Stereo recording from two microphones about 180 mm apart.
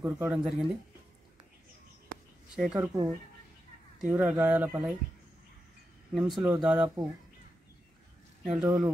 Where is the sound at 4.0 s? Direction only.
5° right (ahead or behind).